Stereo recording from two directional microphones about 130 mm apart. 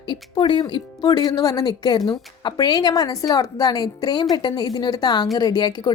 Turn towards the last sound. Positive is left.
turn(degrees=35)  # may be behind; listen again after turning